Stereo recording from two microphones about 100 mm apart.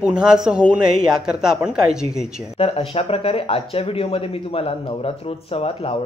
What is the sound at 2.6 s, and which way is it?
A man's voice, 80° left.